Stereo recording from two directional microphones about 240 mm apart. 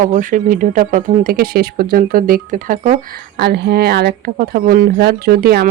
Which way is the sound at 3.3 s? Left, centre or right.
Right.